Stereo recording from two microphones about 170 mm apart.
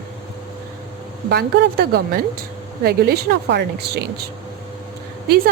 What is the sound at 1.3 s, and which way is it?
A woman's voice, 70° right (ahead or behind).